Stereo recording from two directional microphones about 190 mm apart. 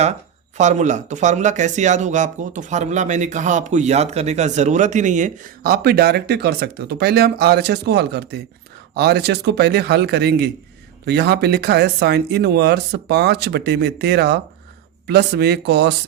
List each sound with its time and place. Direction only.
0.0 s speech: 35° right (ahead or behind); by 16.0 s 60° right (ahead or behind)